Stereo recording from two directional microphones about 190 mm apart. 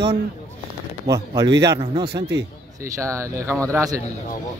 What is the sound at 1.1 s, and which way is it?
Speech, 20° right (ahead or behind).